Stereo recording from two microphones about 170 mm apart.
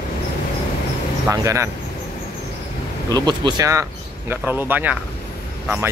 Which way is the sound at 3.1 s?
25° right (ahead or behind).